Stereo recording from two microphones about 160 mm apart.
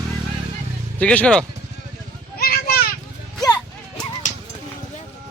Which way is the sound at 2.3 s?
70° left (ahead or behind).